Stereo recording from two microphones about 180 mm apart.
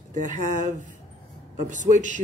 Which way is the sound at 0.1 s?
45° right (ahead or behind).